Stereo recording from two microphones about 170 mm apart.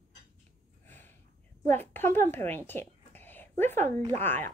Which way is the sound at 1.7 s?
10° left (ahead or behind).